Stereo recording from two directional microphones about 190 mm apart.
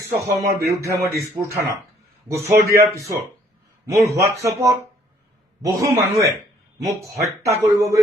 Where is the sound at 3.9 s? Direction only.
15° right (ahead or behind).